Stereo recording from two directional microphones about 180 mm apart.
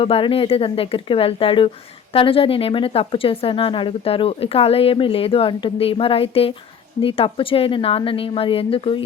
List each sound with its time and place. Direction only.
0.0 s speech: 30° left (ahead or behind)